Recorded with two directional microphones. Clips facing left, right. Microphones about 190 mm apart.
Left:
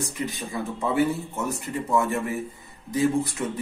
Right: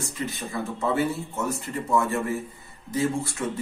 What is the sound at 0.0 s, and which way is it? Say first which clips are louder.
Speech: left 1 dB; 15° left (ahead or behind).